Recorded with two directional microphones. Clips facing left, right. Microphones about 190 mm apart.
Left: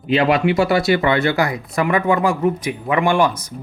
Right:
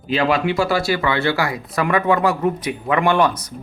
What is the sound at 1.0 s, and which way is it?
Speech, 20° left (ahead or behind).